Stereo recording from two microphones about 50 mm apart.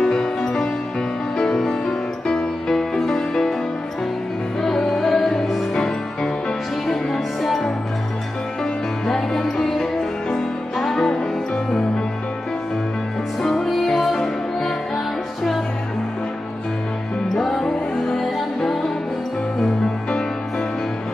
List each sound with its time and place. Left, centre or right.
0.0 s music: centre
4.7 s music: centre
9.0 s music: centre
13.4 s music: centre
17.4 s music: centre
19.6 s music: centre